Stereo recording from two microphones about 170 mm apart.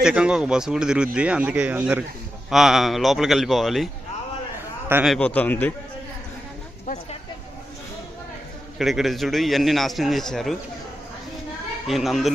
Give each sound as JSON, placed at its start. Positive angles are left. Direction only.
{"t": 0.0, "sound": "speech", "side_deg": -5}
{"t": 5.0, "sound": "a man's voice", "side_deg": 5}
{"t": 6.8, "sound": "a sound", "side_deg": 40}
{"t": 8.8, "sound": "speech", "side_deg": 0}
{"t": 11.9, "sound": "speech", "side_deg": 0}